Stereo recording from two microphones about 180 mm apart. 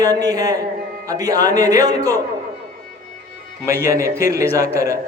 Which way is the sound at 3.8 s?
15° right (ahead or behind).